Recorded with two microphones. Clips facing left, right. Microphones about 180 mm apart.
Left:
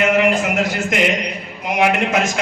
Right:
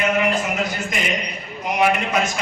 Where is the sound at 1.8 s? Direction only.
80° left.